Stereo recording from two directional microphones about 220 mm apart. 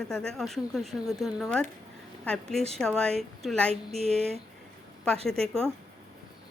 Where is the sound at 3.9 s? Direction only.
30° right (ahead or behind).